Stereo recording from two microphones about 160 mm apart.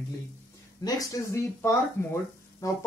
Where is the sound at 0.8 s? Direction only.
20° left (ahead or behind).